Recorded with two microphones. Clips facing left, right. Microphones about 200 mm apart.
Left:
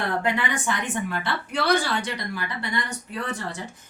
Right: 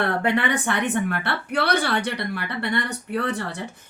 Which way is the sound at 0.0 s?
65° right (ahead or behind).